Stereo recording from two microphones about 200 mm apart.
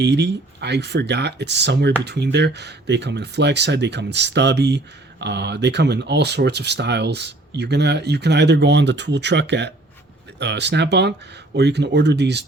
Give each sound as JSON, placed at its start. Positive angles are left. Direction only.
{"t": 0.0, "sound": "speech", "side_deg": -60}